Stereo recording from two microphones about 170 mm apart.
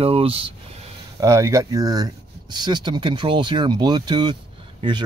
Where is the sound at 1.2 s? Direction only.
20° right (ahead or behind).